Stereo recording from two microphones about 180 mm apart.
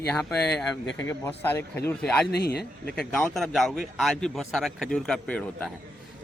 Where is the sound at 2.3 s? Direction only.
65° left (ahead or behind).